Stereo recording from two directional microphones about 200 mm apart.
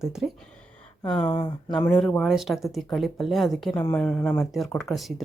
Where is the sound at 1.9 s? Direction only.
5° left (ahead or behind).